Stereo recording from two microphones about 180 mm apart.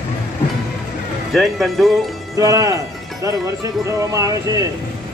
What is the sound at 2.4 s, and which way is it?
Speech, 20° right (ahead or behind).